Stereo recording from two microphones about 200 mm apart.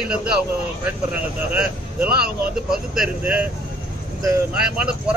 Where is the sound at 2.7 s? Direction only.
5° right (ahead or behind).